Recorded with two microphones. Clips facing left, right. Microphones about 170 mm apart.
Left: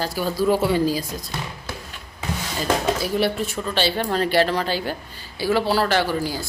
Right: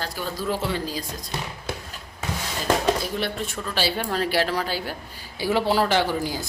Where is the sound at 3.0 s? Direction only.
5° left (ahead or behind).